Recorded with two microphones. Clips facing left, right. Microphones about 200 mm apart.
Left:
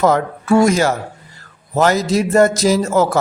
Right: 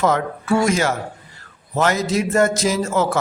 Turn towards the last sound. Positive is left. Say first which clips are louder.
# left 5 dB
turn(degrees=40)  # may be behind; listen again after turning